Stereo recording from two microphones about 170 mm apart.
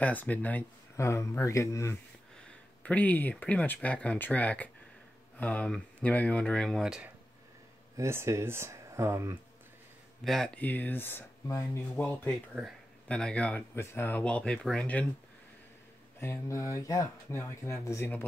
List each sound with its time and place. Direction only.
0.0 s speech: 10° left (ahead or behind)
8.0 s speech: 15° right (ahead or behind)
10.2 s speech: 5° left (ahead or behind)
16.2 s speech: 15° left (ahead or behind)